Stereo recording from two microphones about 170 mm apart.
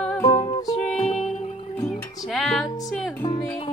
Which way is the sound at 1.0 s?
40° left (ahead or behind).